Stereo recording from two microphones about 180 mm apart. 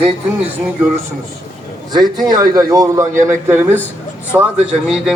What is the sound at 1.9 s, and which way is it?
A man's voice, 20° right (ahead or behind).